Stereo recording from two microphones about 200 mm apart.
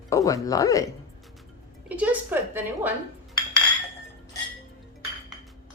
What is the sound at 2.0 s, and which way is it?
Speech, 10° right (ahead or behind).